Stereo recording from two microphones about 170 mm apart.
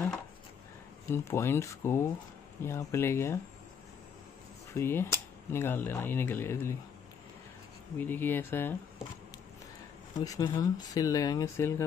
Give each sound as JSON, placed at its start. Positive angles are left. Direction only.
{"t": 1.1, "sound": "speech", "side_deg": 15}
{"t": 4.7, "sound": "speech", "side_deg": 15}
{"t": 8.0, "sound": "speech", "side_deg": 10}
{"t": 10.1, "sound": "speech", "side_deg": 20}